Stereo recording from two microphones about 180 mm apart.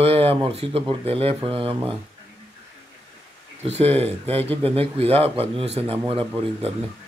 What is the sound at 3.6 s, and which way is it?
Speech, 35° right (ahead or behind).